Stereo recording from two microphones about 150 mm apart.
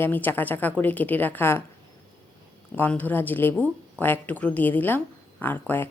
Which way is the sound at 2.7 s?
10° left (ahead or behind).